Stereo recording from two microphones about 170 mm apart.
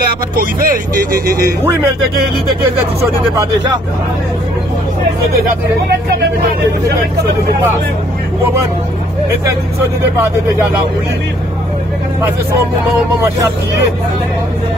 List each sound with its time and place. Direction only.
0.4 s speech: 55° right (ahead or behind)